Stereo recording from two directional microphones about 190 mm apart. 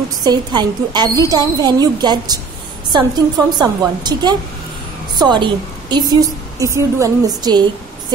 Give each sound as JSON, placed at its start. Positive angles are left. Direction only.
{"t": 0.2, "sound": "a woman's voice", "side_deg": -20}